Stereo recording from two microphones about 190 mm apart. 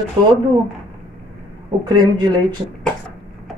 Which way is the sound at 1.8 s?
20° right (ahead or behind).